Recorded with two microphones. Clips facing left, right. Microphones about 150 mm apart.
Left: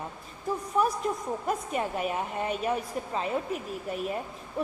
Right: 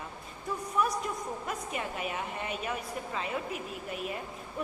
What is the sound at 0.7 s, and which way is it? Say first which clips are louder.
A woman's voice: left 4 dB; 35° left (ahead or behind).